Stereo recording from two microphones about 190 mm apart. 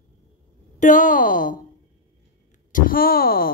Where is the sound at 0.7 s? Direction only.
40° left (ahead or behind).